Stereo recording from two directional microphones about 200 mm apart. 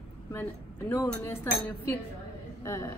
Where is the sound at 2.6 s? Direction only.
15° left (ahead or behind).